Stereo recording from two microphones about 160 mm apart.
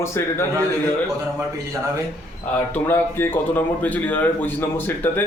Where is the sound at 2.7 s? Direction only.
15° left (ahead or behind).